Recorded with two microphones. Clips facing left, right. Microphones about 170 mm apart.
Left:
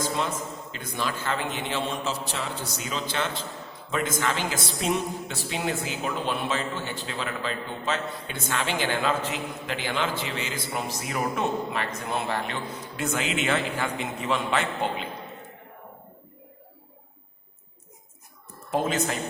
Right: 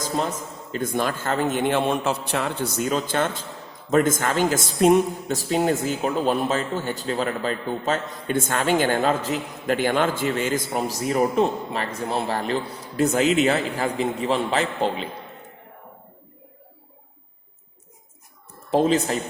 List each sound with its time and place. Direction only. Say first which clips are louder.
0.0 s a man's voice: right 2 dB; 40° right (ahead or behind)
18.7 s a man's voice: right 6 dB; 35° right (ahead or behind)